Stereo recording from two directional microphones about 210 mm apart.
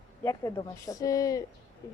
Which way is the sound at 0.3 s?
15° left (ahead or behind).